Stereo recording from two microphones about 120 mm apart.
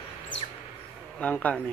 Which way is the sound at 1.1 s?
10° left (ahead or behind).